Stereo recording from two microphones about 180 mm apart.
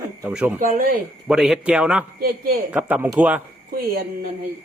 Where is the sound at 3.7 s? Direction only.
55° right (ahead or behind).